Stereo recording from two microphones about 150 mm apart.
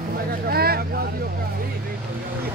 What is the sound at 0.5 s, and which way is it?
Vehicle, 90° right.